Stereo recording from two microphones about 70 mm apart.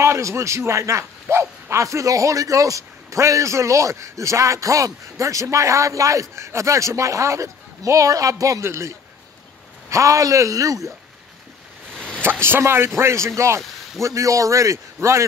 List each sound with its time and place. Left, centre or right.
0.0 s a man's voice: right
12.2 s a man's voice: right